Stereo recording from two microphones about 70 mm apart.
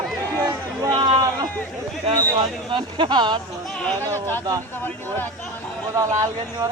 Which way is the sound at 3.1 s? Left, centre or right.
Right.